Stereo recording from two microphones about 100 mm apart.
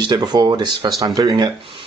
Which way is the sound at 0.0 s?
45° right (ahead or behind).